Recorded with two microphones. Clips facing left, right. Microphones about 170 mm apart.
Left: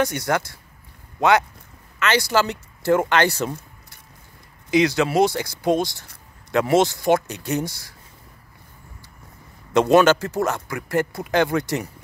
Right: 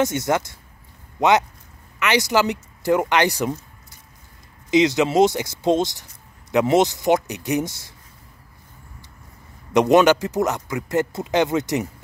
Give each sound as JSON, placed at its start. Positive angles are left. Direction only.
{"t": 0.0, "sound": "speech", "side_deg": -20}
{"t": 4.6, "sound": "speech", "side_deg": -20}
{"t": 9.7, "sound": "speech", "side_deg": -15}